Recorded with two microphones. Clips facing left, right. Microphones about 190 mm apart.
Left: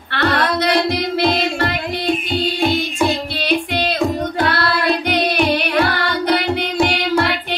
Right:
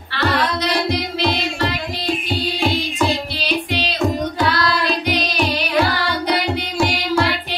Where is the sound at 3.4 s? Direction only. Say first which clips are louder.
Left 3 dB; 55° left (ahead or behind).